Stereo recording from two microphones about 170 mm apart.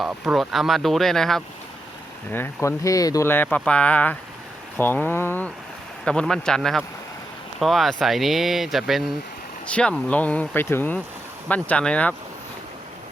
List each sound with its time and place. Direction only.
0.0 s speech: 5° right (ahead or behind)
2.3 s speech: 15° left (ahead or behind)